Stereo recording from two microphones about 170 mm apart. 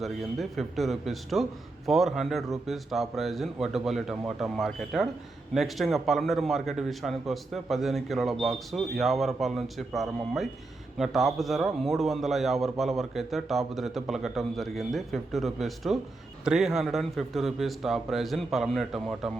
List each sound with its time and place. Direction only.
0.0 s a man's voice: centre (ahead or behind)